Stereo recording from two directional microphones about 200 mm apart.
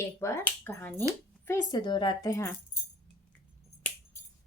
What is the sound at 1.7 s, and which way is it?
Speech, 20° left (ahead or behind).